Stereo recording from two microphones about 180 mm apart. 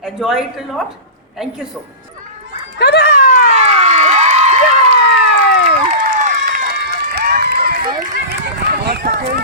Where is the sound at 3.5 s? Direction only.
40° right (ahead or behind).